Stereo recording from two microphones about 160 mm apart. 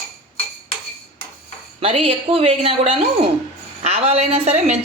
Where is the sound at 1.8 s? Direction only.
35° right (ahead or behind).